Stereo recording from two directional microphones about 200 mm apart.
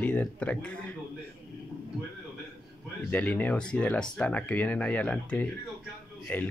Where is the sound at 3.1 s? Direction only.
10° left (ahead or behind).